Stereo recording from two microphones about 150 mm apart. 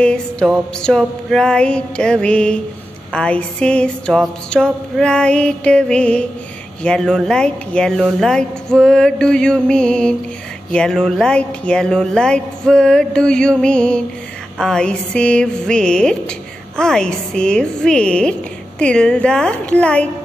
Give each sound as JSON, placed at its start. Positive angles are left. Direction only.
{"t": 0.0, "sound": "a woman's voice", "side_deg": 5}